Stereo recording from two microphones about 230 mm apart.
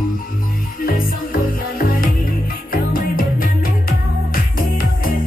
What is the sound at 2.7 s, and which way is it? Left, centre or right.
Music, left.